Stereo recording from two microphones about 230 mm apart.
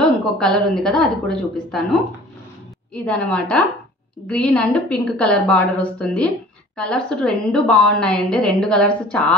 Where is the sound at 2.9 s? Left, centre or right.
Centre.